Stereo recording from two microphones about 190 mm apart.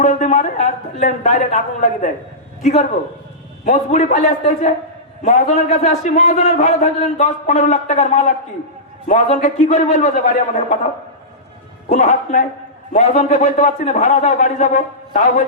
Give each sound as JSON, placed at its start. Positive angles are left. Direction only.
{"t": 0.0, "sound": "a man's voice", "side_deg": 40}
{"t": 3.7, "sound": "a man's voice", "side_deg": 40}
{"t": 11.9, "sound": "a man's voice", "side_deg": 40}